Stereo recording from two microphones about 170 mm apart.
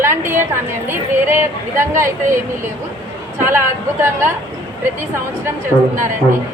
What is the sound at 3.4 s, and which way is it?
Speech, 15° right (ahead or behind).